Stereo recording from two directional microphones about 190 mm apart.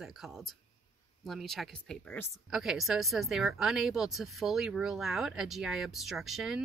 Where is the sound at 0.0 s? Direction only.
Centre (ahead or behind).